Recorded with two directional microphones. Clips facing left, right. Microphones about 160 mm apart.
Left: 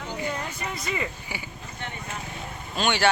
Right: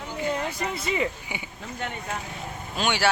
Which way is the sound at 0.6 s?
25° right (ahead or behind).